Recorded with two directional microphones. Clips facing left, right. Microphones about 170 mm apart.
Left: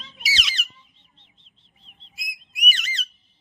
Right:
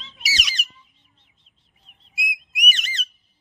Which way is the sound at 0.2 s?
40° right (ahead or behind).